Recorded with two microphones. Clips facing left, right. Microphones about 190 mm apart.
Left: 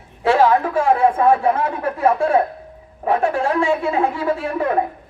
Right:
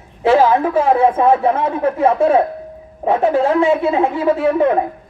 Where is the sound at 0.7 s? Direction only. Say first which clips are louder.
Right 3 dB; 20° right (ahead or behind).